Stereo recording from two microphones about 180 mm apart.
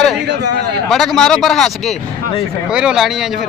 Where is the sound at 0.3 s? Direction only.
70° right (ahead or behind).